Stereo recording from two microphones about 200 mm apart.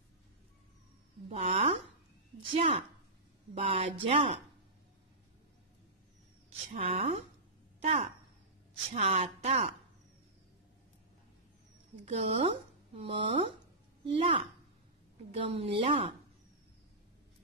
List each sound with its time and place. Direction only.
1.3 s a woman's voice: 30° right (ahead or behind)
6.8 s a woman's voice: 30° right (ahead or behind)
12.0 s speech: 30° right (ahead or behind)